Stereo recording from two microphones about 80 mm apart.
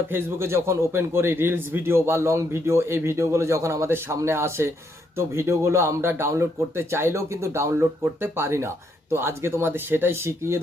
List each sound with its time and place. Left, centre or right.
0.1 s speech: right